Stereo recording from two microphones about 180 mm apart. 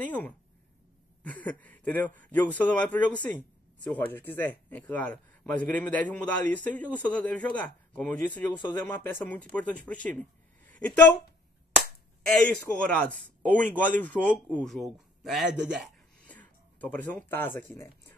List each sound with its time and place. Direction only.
0.0 s speech: 10° left (ahead or behind)
1.3 s a woman's voice: 10° left (ahead or behind)
12.4 s speech: 5° left (ahead or behind)
16.3 s speech: 10° left (ahead or behind)